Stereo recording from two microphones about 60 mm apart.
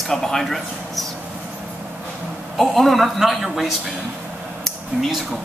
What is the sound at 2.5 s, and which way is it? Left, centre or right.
A woman's voice, centre.